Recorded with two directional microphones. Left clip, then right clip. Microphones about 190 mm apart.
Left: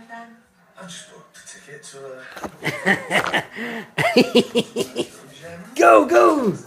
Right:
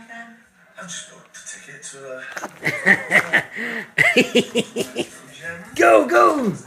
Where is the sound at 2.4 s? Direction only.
Centre (ahead or behind).